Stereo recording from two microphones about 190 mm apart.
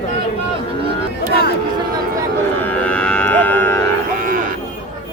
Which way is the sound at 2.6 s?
10° left (ahead or behind).